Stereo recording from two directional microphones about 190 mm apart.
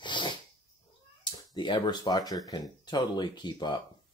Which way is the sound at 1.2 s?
25° left (ahead or behind).